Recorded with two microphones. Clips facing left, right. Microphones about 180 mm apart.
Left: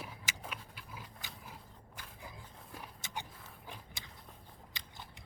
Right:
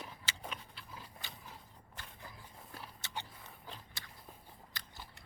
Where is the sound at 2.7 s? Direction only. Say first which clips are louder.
Left 1 dB; 15° left (ahead or behind).